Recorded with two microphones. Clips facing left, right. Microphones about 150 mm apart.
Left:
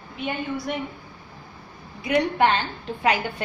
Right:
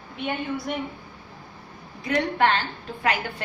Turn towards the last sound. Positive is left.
turn(degrees=20)  # may be behind; listen again after turning